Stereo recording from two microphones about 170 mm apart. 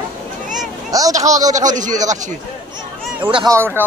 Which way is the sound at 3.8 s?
10° right (ahead or behind).